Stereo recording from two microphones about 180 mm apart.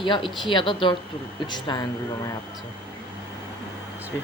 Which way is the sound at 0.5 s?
25° left (ahead or behind).